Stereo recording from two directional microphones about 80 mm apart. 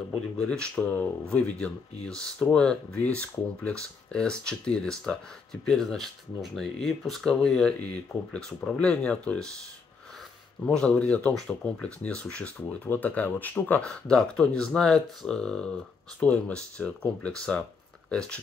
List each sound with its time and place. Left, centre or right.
0.4 s speech: centre
10.6 s speech: centre
13.8 s speech: centre